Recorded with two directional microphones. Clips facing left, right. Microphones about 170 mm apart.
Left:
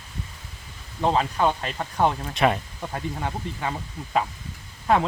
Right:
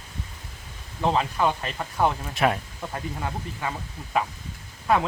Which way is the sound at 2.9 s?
15° left (ahead or behind).